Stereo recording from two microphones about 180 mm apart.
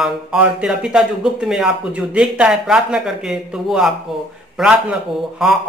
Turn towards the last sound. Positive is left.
turn(degrees=-5)  # may be behind; listen again after turning